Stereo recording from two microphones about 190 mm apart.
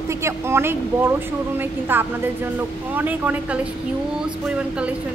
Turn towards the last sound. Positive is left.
turn(degrees=-10)  # may be behind; listen again after turning